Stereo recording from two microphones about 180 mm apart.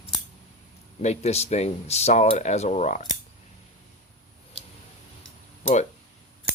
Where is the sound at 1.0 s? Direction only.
35° left (ahead or behind).